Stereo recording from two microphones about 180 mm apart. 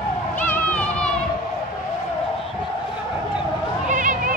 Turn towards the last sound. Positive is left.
turn(degrees=-45)  # may be behind; listen again after turning